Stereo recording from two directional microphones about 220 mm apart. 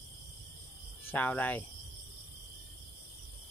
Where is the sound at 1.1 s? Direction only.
5° left (ahead or behind).